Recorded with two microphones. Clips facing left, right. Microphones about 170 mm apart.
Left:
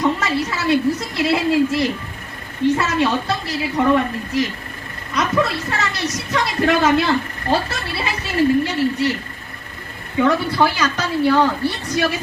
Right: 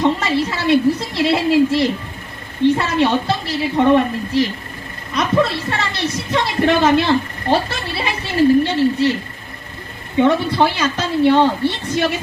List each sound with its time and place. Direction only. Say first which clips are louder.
0.0 s a woman's voice: right 3 dB; 25° right (ahead or behind)
10.2 s a woman's voice: right 2 dB; 25° right (ahead or behind)